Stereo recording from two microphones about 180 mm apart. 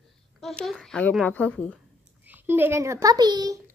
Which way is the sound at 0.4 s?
Centre (ahead or behind).